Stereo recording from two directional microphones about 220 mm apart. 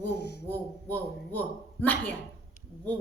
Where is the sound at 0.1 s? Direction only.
50° left (ahead or behind).